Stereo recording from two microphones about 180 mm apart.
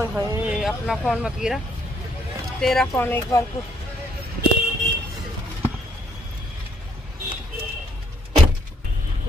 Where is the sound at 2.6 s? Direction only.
Centre (ahead or behind).